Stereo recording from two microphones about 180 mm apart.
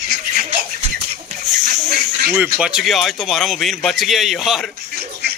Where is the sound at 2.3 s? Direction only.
5° right (ahead or behind).